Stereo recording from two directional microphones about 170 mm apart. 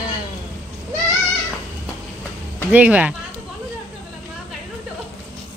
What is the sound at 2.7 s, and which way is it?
Speech, 10° right (ahead or behind).